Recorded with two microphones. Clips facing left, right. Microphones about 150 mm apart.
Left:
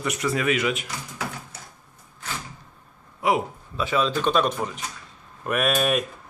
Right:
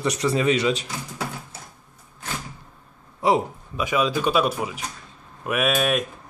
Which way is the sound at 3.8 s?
10° right (ahead or behind).